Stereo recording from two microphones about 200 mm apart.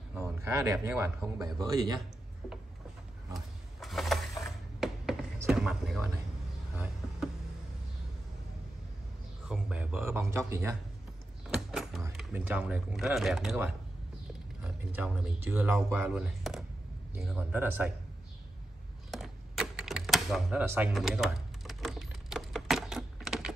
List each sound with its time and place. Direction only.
0.1 s a sound: 15° right (ahead or behind)
1.4 s speech: 15° right (ahead or behind)
3.3 s a sound: centre (ahead or behind)
5.5 s speech: centre (ahead or behind)
6.7 s a sound: 5° right (ahead or behind)
9.5 s speech: 5° right (ahead or behind)
11.5 s power windows: centre (ahead or behind)
12.2 s speech: 5° right (ahead or behind)
19.0 s typewriter: centre (ahead or behind)
20.6 s speech: 10° right (ahead or behind)
20.9 s typing: centre (ahead or behind)